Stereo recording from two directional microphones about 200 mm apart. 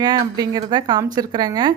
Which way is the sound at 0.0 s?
20° right (ahead or behind).